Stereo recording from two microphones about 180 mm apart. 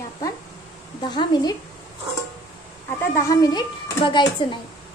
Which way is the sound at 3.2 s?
20° left (ahead or behind).